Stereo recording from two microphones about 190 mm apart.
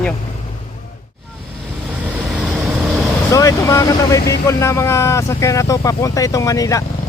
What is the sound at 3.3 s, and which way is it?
Speech, 15° left (ahead or behind).